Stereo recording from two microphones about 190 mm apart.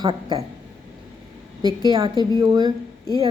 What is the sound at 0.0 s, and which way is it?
Speech, 25° right (ahead or behind).